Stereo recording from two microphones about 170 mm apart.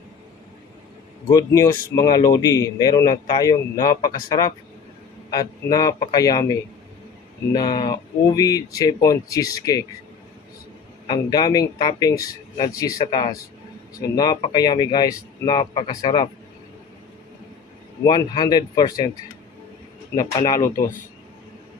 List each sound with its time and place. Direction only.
1.3 s a man's voice: 20° left (ahead or behind)
11.1 s a man's voice: 20° left (ahead or behind)
18.0 s a man's voice: 25° left (ahead or behind)
20.1 s a man's voice: 20° left (ahead or behind)